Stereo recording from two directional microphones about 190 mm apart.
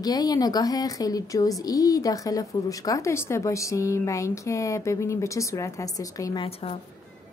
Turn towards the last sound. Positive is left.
turn(degrees=30)  # may be behind; listen again after turning